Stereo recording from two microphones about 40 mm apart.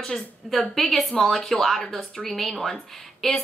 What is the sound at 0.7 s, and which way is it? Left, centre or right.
A woman's voice, centre.